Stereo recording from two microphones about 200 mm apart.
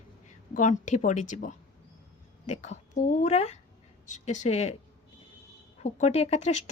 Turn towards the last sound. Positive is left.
turn(degrees=30)  # may be behind; listen again after turning